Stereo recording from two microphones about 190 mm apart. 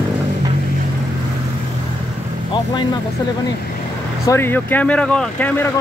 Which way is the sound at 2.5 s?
25° left (ahead or behind).